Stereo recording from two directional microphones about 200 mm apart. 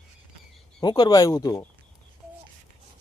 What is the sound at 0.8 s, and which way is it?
Speech, 20° left (ahead or behind).